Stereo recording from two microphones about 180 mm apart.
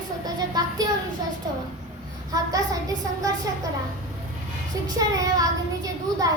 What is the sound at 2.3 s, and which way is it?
Speech, 20° right (ahead or behind).